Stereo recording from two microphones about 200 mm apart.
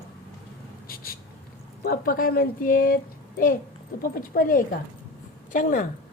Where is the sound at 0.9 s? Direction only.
50° left (ahead or behind).